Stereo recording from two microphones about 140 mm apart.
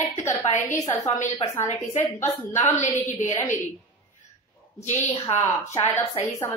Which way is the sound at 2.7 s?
55° left (ahead or behind).